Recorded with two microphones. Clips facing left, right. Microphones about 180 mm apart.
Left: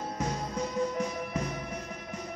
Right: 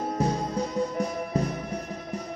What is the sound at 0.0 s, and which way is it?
Music, 35° right (ahead or behind).